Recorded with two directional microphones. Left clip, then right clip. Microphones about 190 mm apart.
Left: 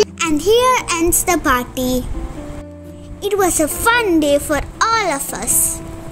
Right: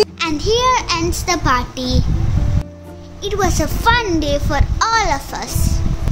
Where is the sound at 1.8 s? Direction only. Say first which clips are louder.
Left 3 dB; 50° left (ahead or behind).